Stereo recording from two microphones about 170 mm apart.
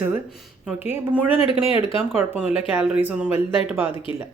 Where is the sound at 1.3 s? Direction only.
35° left (ahead or behind).